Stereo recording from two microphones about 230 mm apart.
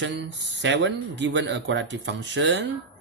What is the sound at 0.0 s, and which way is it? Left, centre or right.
Speech, right.